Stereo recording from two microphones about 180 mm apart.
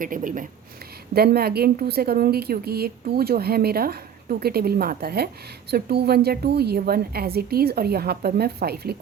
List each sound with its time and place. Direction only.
0.0 s speech: 50° right (ahead or behind)
1.1 s a woman's voice: 60° right (ahead or behind)